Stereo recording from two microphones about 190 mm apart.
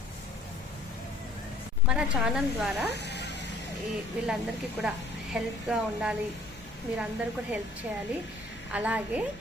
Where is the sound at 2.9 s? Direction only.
60° left (ahead or behind).